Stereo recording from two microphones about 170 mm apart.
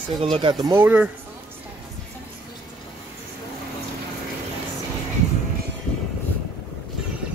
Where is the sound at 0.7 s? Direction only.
10° right (ahead or behind).